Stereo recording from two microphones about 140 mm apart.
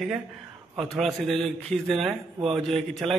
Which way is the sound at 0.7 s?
Centre (ahead or behind).